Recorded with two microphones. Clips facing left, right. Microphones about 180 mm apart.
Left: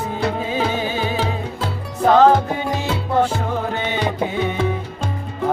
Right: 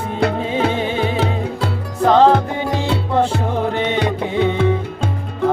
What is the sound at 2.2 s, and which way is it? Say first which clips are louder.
Music: right 1 dB; centre (ahead or behind).